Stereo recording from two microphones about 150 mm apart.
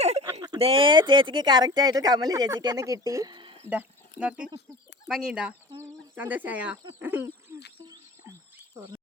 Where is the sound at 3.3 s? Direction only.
35° right (ahead or behind).